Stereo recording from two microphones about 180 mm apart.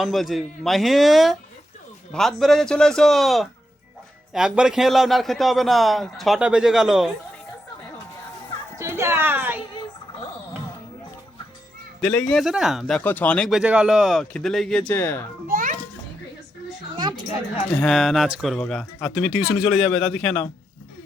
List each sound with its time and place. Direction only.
0.0 s a man's voice: centre (ahead or behind)
8.8 s a woman's voice: 15° right (ahead or behind)
12.0 s a man's voice: 5° left (ahead or behind)
13.0 s a man's voice: 10° left (ahead or behind)
15.4 s children playing: 50° right (ahead or behind)
17.0 s a sound: 25° right (ahead or behind)
17.7 s a man's voice: 5° left (ahead or behind)